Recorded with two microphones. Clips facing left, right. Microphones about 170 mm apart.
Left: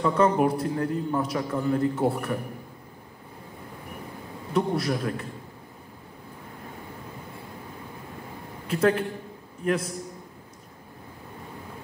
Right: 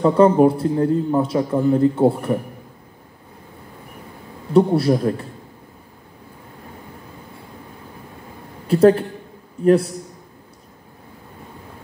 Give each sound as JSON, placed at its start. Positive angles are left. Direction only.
{"t": 0.0, "sound": "a man's voice", "side_deg": -35}
{"t": 4.6, "sound": "a man's voice", "side_deg": -35}
{"t": 8.6, "sound": "a man's voice", "side_deg": -35}